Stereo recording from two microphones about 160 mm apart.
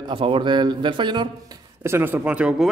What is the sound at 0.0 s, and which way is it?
Speech, 35° right (ahead or behind).